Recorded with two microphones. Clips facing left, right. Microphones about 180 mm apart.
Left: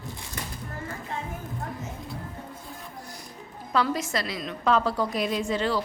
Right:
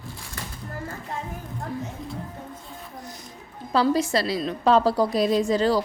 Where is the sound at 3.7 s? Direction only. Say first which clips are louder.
Right 5 dB; 30° right (ahead or behind).